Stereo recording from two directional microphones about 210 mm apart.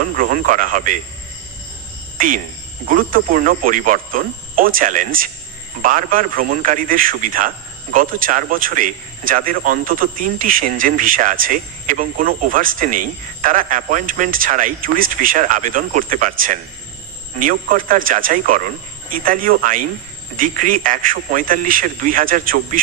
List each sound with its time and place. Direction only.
0.2 s speech: 40° right (ahead or behind)
2.1 s speech: 40° right (ahead or behind)